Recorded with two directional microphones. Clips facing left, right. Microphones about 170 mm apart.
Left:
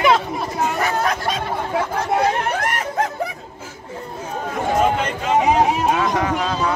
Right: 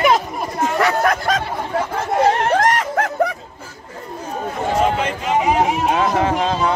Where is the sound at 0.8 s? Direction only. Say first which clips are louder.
Right 3 dB; 55° right (ahead or behind).